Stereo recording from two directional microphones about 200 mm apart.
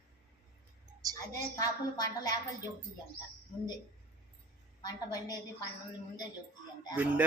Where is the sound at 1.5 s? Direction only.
20° left (ahead or behind).